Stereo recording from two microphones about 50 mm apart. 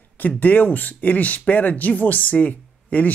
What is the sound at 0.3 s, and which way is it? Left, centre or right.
Speech, left.